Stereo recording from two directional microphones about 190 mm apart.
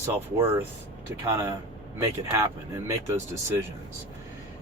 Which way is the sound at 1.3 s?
20° right (ahead or behind).